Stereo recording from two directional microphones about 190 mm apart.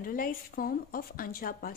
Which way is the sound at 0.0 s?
50° left (ahead or behind).